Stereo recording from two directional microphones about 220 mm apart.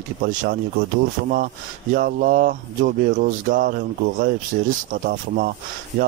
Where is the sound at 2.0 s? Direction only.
40° right (ahead or behind).